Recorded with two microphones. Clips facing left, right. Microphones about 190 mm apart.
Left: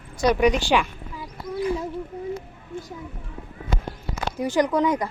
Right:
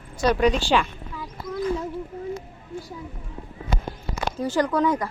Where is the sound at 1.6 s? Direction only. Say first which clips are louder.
Left 1 dB; 10° left (ahead or behind).